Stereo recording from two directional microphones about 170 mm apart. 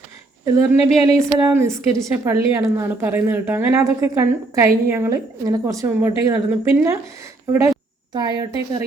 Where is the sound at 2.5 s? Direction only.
15° right (ahead or behind).